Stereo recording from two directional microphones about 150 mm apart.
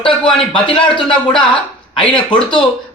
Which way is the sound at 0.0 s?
35° left (ahead or behind).